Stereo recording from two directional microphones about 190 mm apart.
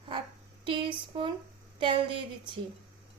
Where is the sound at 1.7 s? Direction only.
25° right (ahead or behind).